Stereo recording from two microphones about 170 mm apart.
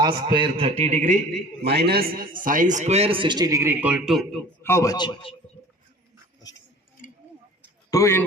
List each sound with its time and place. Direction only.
0.0 s a man's voice: 25° right (ahead or behind); by 1.1 s 45° right (ahead or behind)
1.6 s a man's voice: 75° right (ahead or behind); by 4.4 s centre (ahead or behind)
4.6 s a man's voice: 15° left (ahead or behind)
7.9 s a man's voice: 20° left (ahead or behind)